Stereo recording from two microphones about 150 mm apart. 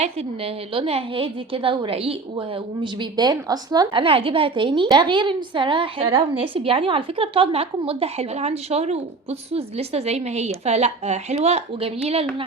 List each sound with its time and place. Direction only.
0.0 s a woman's voice: 40° right (ahead or behind)
2.8 s a woman's voice: 30° right (ahead or behind)